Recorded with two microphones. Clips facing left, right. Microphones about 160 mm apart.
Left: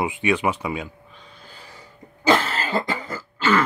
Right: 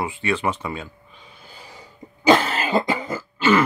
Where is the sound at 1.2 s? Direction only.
10° right (ahead or behind).